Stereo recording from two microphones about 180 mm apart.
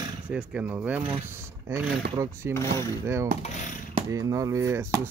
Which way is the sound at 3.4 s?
40° left (ahead or behind).